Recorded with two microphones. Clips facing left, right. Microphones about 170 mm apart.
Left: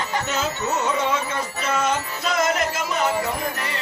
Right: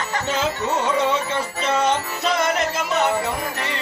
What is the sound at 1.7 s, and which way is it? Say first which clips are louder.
Music: right 3 dB; 30° right (ahead or behind).